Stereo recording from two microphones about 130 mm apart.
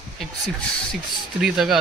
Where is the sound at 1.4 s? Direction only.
5° right (ahead or behind).